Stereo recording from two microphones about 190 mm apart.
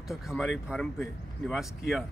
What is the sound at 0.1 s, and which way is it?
Speech, centre (ahead or behind).